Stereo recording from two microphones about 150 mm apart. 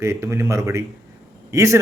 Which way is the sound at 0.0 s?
20° right (ahead or behind).